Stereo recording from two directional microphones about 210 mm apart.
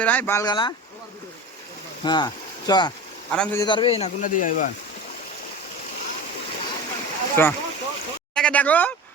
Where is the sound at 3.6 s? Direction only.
25° left (ahead or behind); by 4.5 s 40° left (ahead or behind).